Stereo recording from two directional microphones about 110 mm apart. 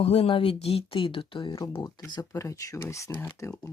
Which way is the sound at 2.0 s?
30° left (ahead or behind).